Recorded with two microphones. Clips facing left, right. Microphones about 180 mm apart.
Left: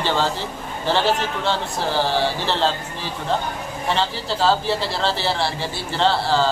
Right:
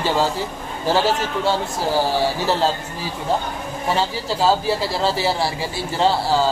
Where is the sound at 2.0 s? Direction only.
10° right (ahead or behind).